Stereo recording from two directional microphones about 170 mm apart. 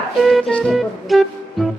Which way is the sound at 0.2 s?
Centre (ahead or behind).